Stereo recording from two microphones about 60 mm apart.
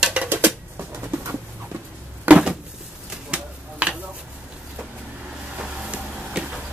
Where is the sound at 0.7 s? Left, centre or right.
Right.